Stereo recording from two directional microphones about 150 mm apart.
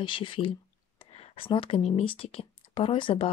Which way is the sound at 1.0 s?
35° left (ahead or behind).